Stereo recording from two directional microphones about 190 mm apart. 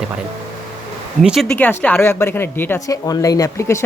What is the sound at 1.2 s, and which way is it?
Speech, centre (ahead or behind).